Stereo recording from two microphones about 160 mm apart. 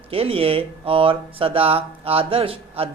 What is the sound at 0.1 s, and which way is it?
Speech, 35° right (ahead or behind).